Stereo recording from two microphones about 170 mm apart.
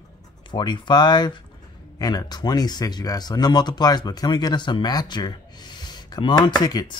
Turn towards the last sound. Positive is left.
turn(degrees=25)  # may be behind; listen again after turning